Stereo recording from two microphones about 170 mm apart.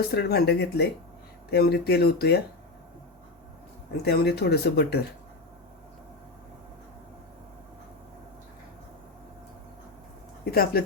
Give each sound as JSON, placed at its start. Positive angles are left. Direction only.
{"t": 0.1, "sound": "speech", "side_deg": 75}
{"t": 4.0, "sound": "speech", "side_deg": 70}
{"t": 10.5, "sound": "speech", "side_deg": 65}